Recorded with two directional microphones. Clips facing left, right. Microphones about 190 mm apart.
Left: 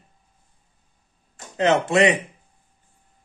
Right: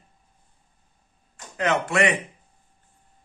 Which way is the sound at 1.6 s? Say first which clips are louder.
Left 5 dB; 25° left (ahead or behind).